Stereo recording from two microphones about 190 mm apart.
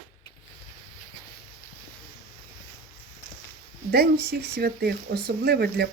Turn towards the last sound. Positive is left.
turn(degrees=-55)  # may be behind; listen again after turning